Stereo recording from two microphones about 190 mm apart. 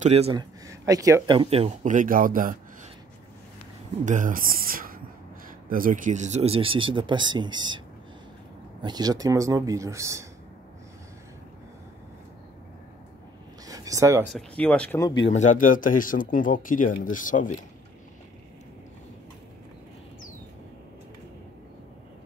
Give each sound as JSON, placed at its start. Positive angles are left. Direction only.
{"t": 0.0, "sound": "speech", "side_deg": -35}
{"t": 0.4, "sound": "speech", "side_deg": -20}
{"t": 4.0, "sound": "speech", "side_deg": -40}
{"t": 8.8, "sound": "speech", "side_deg": -20}
{"t": 13.7, "sound": "a sound", "side_deg": -20}
{"t": 14.3, "sound": "speech", "side_deg": 5}
{"t": 15.0, "sound": "speech", "side_deg": 20}
{"t": 15.3, "sound": "speech", "side_deg": 40}